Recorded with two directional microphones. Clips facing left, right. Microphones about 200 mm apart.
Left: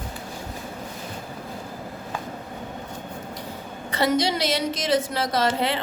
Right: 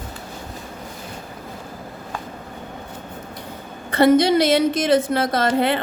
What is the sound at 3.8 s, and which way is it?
A woman's voice, 55° right (ahead or behind).